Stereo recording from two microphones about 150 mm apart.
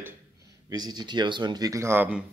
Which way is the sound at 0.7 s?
25° right (ahead or behind).